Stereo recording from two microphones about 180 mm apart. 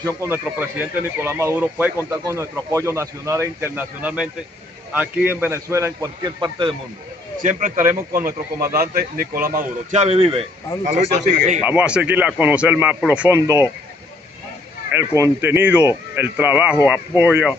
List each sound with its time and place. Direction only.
0.0 s speech: 15° right (ahead or behind)
7.4 s a man's voice: 45° right (ahead or behind)
10.9 s a man's voice: 45° right (ahead or behind)
11.6 s speech: 10° right (ahead or behind)
14.9 s speech: 15° right (ahead or behind)